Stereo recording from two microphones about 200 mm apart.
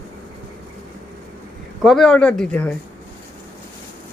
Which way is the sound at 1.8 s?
Centre (ahead or behind).